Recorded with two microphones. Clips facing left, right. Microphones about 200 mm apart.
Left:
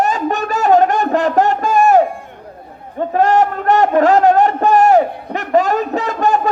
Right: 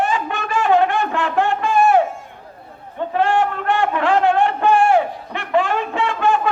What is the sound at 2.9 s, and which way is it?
A man's voice, 40° left (ahead or behind).